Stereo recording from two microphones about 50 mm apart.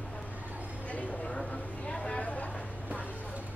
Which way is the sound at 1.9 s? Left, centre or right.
Centre.